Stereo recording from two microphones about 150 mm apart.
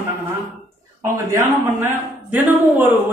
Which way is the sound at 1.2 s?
15° right (ahead or behind).